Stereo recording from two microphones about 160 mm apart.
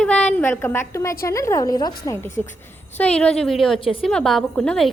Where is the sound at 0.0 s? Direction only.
5° left (ahead or behind).